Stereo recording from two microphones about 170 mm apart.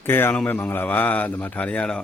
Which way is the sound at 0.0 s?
15° left (ahead or behind).